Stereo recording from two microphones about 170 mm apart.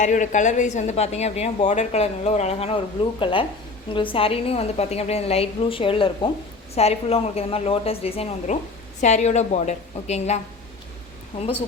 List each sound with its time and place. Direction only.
0.0 s speech: 45° left (ahead or behind)